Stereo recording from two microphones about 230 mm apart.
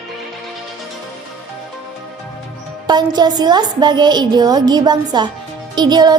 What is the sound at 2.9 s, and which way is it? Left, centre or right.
A woman's voice, centre.